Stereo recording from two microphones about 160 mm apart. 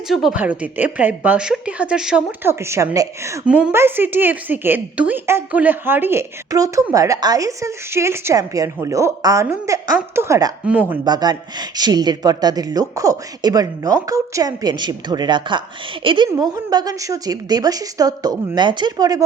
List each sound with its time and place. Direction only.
0.1 s a woman's voice: centre (ahead or behind); by 3.4 s 20° right (ahead or behind)
3.4 s a woman's voice: 10° right (ahead or behind)
11.0 s a woman's voice: 25° right (ahead or behind)